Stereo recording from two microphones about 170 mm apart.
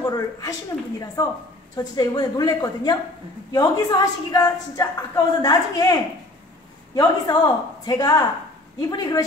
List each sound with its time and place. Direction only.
0.0 s a woman's voice: 20° left (ahead or behind)
7.0 s a woman's voice: 20° left (ahead or behind)